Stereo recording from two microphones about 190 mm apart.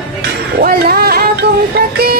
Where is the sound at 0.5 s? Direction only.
55° right (ahead or behind).